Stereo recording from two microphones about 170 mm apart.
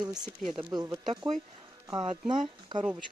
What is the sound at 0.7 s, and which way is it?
Speech, 25° right (ahead or behind).